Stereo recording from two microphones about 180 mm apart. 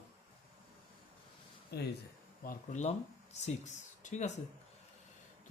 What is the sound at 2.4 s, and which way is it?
Speech, 45° left (ahead or behind).